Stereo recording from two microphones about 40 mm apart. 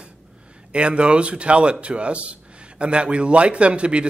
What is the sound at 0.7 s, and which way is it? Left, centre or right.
A man's voice, right.